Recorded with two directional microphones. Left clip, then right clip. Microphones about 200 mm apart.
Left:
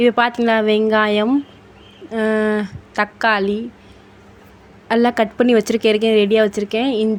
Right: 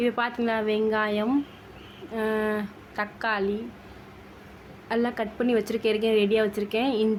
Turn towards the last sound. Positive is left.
turn(degrees=25)  # may be behind; listen again after turning